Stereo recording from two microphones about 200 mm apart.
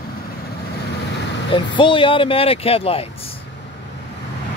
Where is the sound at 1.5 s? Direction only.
25° left (ahead or behind).